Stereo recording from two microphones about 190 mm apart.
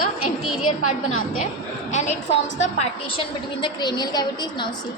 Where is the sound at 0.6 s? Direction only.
90° left.